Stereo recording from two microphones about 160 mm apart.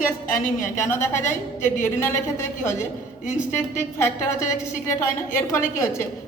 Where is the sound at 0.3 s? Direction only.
55° left (ahead or behind).